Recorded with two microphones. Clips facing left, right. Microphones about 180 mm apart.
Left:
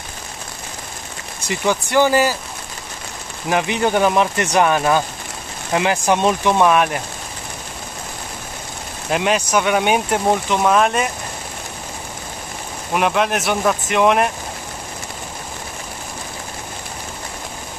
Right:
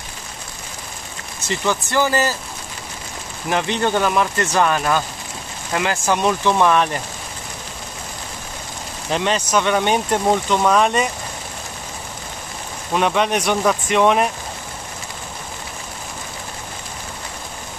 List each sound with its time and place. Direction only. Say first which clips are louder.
1.4 s speech: left 2 dB; 15° left (ahead or behind)
3.4 s speech: left 2 dB; 15° left (ahead or behind)
9.1 s speech: left 1 dB; 10° left (ahead or behind)
12.9 s speech: even; 5° left (ahead or behind)